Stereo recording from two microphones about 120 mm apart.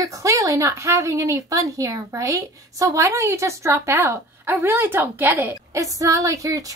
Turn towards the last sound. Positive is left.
turn(degrees=-30)  # may be behind; listen again after turning